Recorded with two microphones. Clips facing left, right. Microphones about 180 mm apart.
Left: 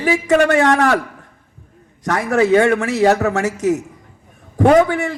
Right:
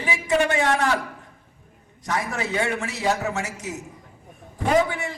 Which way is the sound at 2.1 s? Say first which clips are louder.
Left 12 dB; 75° left (ahead or behind).